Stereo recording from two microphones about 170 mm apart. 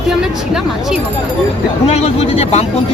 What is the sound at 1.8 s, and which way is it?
Speech, 40° left (ahead or behind).